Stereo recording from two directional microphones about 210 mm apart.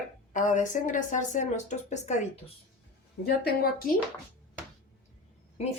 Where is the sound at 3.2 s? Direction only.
45° left (ahead or behind).